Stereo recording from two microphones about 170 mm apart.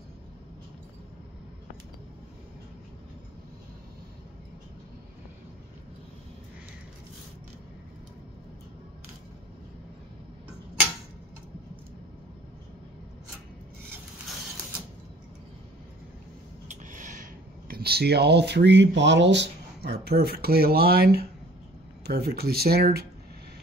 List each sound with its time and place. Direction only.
16.6 s speech: 50° right (ahead or behind); by 23.0 s 65° right (ahead or behind)